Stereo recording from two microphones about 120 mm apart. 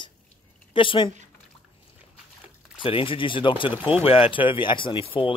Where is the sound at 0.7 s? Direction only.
45° left (ahead or behind).